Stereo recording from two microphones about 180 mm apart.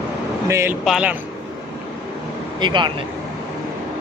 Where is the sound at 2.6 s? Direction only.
25° right (ahead or behind).